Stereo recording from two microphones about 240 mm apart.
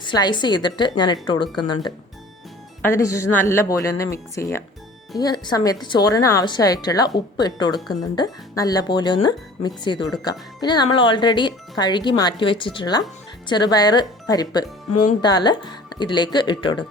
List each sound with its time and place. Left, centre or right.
0.0 s speech: centre